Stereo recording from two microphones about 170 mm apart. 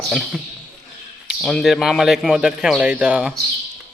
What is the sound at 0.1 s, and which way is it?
A man's voice, centre (ahead or behind).